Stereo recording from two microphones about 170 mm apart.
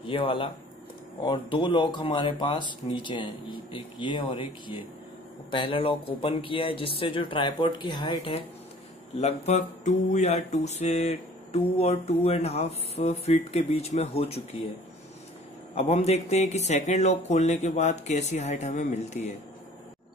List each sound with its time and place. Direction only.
0.0 s music: 30° left (ahead or behind)
1.2 s speech: 30° left (ahead or behind)
9.2 s music: 40° left (ahead or behind)
15.7 s music: 40° left (ahead or behind)